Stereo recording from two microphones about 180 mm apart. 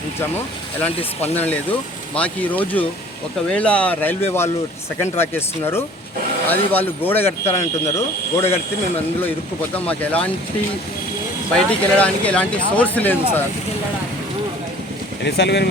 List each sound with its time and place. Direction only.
1.3 s speech: 10° left (ahead or behind)
9.7 s speech: 10° left (ahead or behind)
11.5 s speech: 5° left (ahead or behind)
15.2 s speech: 70° left (ahead or behind)